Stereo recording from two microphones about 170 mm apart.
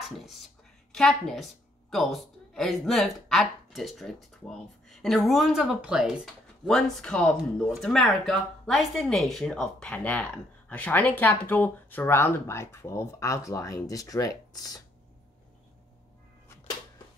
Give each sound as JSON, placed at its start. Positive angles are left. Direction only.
{"t": 0.0, "sound": "a woman's voice", "side_deg": 0}